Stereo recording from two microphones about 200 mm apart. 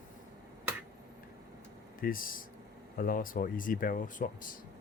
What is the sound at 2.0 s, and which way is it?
Speech, 45° left (ahead or behind).